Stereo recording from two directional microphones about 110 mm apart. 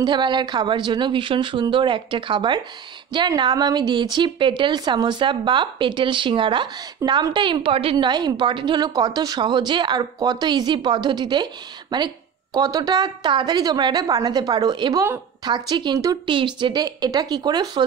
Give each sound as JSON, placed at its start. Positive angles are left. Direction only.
{"t": 0.0, "sound": "a woman's voice", "side_deg": -45}
{"t": 7.0, "sound": "speech", "side_deg": -30}
{"t": 7.3, "sound": "a woman's voice", "side_deg": -45}